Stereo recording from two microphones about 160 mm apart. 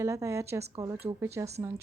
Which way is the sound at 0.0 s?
20° right (ahead or behind).